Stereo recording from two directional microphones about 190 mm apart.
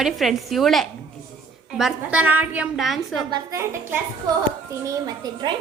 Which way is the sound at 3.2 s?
20° right (ahead or behind).